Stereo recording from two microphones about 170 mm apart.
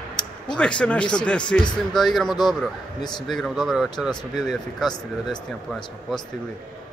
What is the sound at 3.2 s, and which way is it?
Speech, centre (ahead or behind).